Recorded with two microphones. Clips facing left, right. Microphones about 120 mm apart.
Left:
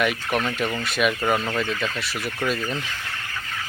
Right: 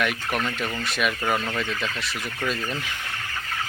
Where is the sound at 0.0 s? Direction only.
Centre (ahead or behind).